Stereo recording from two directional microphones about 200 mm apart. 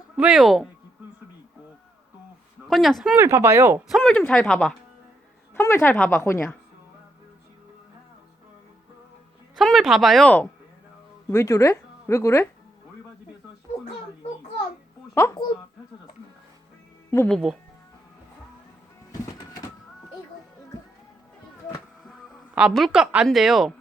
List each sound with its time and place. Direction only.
0.2 s speech: 5° right (ahead or behind)
2.6 s speech: centre (ahead or behind)
3.8 s a woman's voice: centre (ahead or behind)
9.6 s speech: centre (ahead or behind)
15.1 s a sound: 15° left (ahead or behind)
17.2 s speech: 5° left (ahead or behind)
22.0 s speech: centre (ahead or behind)